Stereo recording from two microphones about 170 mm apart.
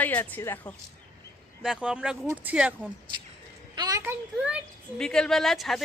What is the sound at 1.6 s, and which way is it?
Speech, 5° right (ahead or behind).